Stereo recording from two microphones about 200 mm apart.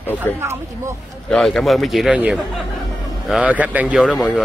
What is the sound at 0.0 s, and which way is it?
Speech, 10° left (ahead or behind).